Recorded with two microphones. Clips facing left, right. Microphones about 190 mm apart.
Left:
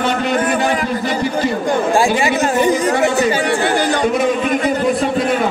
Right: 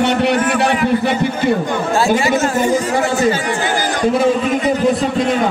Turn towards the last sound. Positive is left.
turn(degrees=65)  # may be behind; listen again after turning